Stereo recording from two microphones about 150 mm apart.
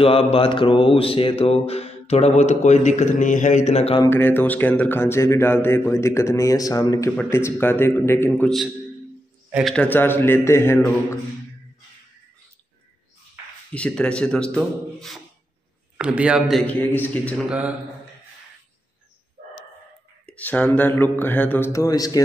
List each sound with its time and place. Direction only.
0.0 s mantra: 40° left (ahead or behind)
4.0 s speech: 15° left (ahead or behind)
9.5 s a man's voice: 5° right (ahead or behind)
9.8 s speech: 15° left (ahead or behind)
13.7 s speech: 5° left (ahead or behind)
16.0 s a man's voice: 10° right (ahead or behind)
16.6 s speech: 10° left (ahead or behind)
17.5 s a man's voice: 10° right (ahead or behind)
20.2 s speech: 10° left (ahead or behind)
21.7 s speech: 25° left (ahead or behind)